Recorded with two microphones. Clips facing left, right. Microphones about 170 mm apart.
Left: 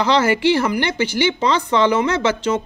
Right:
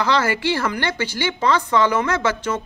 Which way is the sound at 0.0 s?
20° left (ahead or behind).